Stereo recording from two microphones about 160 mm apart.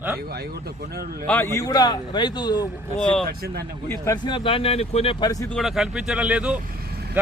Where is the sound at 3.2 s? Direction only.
75° right (ahead or behind).